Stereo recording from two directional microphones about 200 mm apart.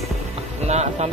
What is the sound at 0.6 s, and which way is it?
Speech, 35° right (ahead or behind).